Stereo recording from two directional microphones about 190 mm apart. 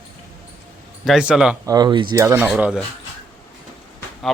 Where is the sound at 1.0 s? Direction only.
5° right (ahead or behind).